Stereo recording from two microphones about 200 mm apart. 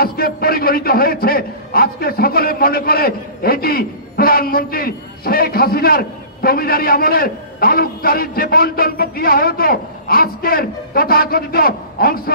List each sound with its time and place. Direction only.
0.0 s a man's voice: 50° left (ahead or behind)